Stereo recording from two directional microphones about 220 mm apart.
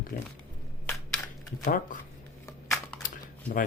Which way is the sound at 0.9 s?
10° left (ahead or behind).